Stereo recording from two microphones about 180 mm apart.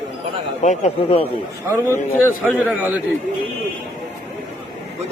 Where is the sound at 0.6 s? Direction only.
40° left (ahead or behind).